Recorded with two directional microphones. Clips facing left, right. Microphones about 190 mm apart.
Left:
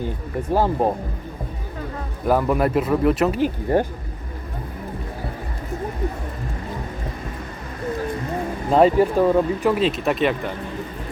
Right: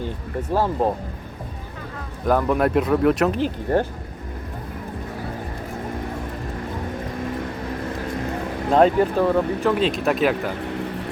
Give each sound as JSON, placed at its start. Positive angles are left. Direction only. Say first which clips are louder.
{"t": 0.5, "sound": "speech", "louder": "left 1 dB", "side_deg": 15}
{"t": 2.2, "sound": "speech", "louder": "even", "side_deg": 5}
{"t": 8.7, "sound": "speech", "louder": "left 1 dB", "side_deg": 5}
{"t": 9.7, "sound": "speech", "louder": "even", "side_deg": 0}
{"t": 10.7, "sound": "vehicle", "louder": "right 3 dB", "side_deg": -75}